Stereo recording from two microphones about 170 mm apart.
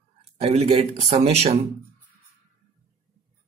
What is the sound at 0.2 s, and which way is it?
Speech, 35° right (ahead or behind).